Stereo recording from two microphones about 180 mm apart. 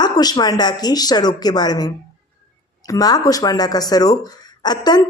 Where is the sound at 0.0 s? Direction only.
20° left (ahead or behind).